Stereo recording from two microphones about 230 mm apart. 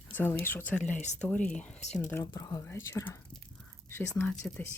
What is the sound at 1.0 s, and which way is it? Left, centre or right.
Speech, left.